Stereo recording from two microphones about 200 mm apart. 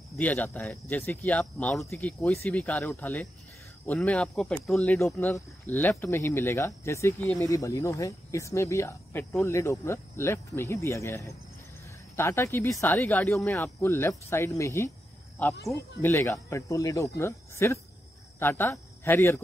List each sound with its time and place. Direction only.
0.2 s speech: 10° left (ahead or behind)